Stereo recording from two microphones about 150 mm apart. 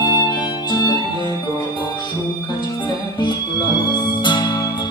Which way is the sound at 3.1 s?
30° left (ahead or behind).